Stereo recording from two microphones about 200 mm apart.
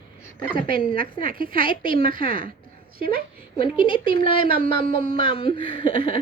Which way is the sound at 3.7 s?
25° left (ahead or behind).